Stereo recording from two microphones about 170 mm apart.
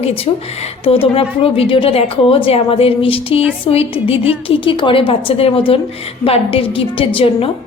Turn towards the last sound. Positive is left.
turn(degrees=30)  # may be behind; listen again after turning